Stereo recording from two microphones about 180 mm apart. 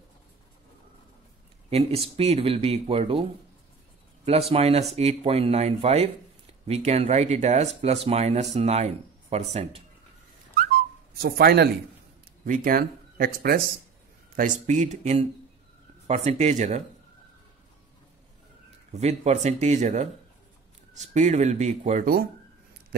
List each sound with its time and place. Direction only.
1.7 s speech: 35° right (ahead or behind)
4.3 s speech: 35° right (ahead or behind)
11.1 s speech: 60° right (ahead or behind)
12.4 s speech: 50° right (ahead or behind)
14.7 s speech: 40° right (ahead or behind)
18.9 s speech: 40° right (ahead or behind)